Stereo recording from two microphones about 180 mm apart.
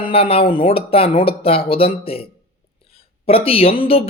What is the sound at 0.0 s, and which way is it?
Speech, 30° left (ahead or behind).